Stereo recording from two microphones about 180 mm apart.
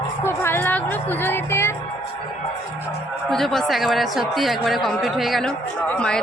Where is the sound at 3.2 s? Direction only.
Centre (ahead or behind).